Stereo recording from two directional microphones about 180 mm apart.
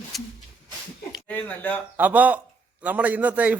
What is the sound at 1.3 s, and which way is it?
Speech, 10° left (ahead or behind).